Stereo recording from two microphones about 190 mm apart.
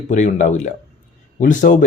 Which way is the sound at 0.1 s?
40° left (ahead or behind).